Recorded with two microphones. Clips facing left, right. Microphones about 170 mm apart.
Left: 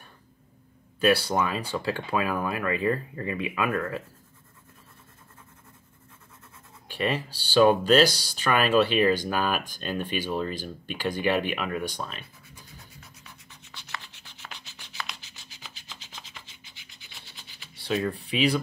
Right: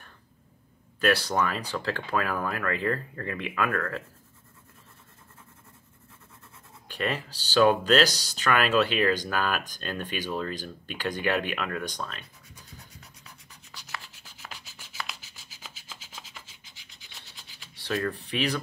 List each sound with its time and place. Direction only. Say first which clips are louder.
1.0 s speech: left 2 dB; 10° left (ahead or behind)
7.0 s speech: left 3 dB; 10° left (ahead or behind)
13.8 s rub: even; 5° right (ahead or behind)
18.0 s speech: left 5 dB; 10° left (ahead or behind)